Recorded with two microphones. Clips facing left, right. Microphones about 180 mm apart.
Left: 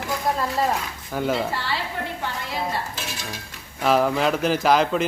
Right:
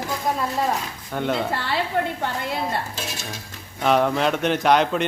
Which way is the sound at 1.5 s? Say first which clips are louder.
Right 2 dB; 55° right (ahead or behind).